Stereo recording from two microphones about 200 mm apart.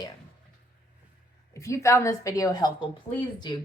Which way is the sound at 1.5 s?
15° left (ahead or behind).